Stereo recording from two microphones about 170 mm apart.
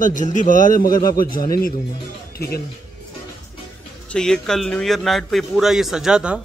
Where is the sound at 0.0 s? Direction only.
50° left (ahead or behind); by 2.6 s 65° left (ahead or behind).